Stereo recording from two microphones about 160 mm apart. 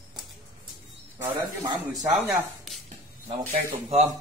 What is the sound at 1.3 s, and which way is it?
Speech, 20° right (ahead or behind).